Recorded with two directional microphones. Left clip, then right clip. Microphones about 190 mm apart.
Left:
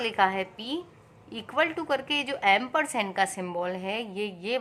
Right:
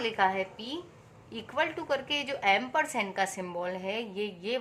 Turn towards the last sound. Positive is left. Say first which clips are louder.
# left 2 dB
turn(degrees=25)  # may be behind; listen again after turning